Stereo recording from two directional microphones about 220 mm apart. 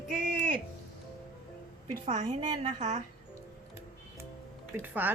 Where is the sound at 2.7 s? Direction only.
35° right (ahead or behind).